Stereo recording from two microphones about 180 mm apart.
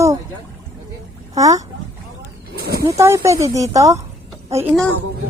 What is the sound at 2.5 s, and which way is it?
Wild animals, 60° right (ahead or behind).